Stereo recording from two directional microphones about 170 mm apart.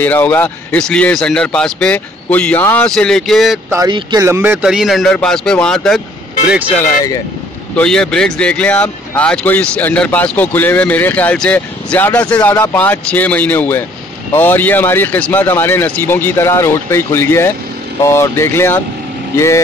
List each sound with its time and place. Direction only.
0.0 s speech: 10° left (ahead or behind)
3.9 s speech: 20° right (ahead or behind); by 6.0 s 5° left (ahead or behind)
7.7 s speech: 5° left (ahead or behind)